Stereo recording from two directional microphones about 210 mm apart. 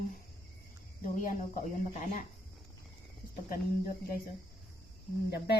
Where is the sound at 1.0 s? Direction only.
35° left (ahead or behind).